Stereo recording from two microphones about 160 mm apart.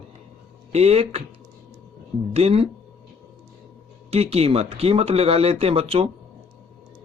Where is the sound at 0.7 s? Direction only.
40° right (ahead or behind).